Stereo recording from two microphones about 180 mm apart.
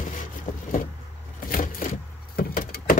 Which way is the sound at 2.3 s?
55° left (ahead or behind).